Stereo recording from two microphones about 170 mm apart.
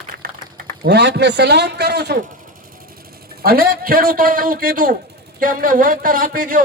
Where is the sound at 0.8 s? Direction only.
80° right.